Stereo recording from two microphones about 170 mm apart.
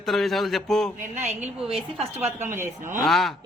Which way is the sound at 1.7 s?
35° right (ahead or behind).